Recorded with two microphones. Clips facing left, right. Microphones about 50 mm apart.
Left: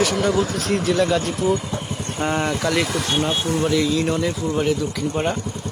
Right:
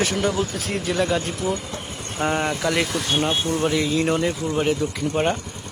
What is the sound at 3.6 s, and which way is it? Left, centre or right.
Speech, right.